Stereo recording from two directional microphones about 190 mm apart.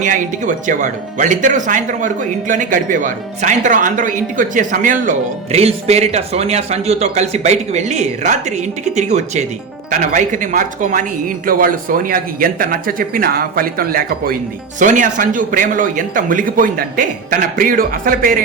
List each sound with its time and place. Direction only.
0.0 s speech: 40° right (ahead or behind)